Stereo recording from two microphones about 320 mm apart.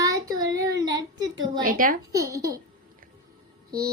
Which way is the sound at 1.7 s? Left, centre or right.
Right.